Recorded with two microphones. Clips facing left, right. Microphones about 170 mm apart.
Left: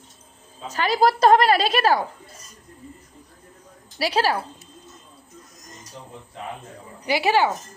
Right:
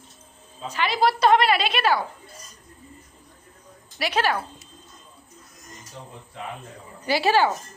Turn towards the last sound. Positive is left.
turn(degrees=20)  # may be behind; listen again after turning